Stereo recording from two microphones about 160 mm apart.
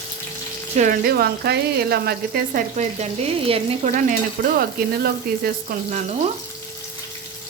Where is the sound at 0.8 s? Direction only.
65° right (ahead or behind).